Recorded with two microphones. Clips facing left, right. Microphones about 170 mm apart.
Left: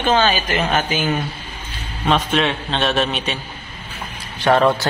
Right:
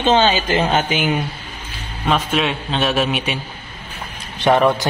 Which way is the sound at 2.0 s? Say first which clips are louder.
Left 1 dB; 5° right (ahead or behind).